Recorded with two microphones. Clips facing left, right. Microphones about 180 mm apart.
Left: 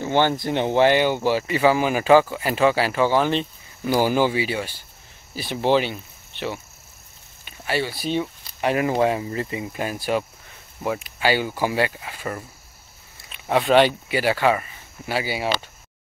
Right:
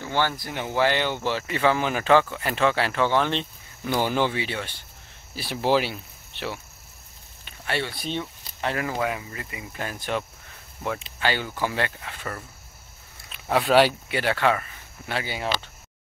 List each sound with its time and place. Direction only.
0.0 s speech: 20° left (ahead or behind)
8.9 s speech: 30° left (ahead or behind)
9.7 s speech: 15° left (ahead or behind)
13.3 s speech: centre (ahead or behind)